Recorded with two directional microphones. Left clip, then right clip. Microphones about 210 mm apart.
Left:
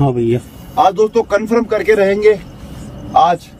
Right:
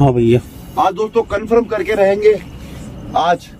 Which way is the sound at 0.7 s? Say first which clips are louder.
Left 3 dB; 45° left (ahead or behind).